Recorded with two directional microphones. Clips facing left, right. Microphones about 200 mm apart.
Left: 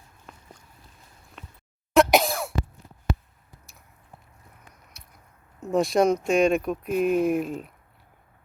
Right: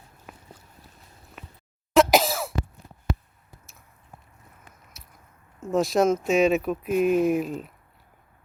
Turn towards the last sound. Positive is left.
turn(degrees=0)  # may be behind; listen again after turning